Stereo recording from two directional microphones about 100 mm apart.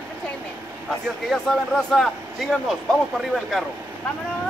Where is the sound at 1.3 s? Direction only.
5° left (ahead or behind).